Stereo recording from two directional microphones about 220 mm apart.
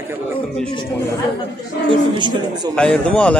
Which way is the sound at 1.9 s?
20° right (ahead or behind).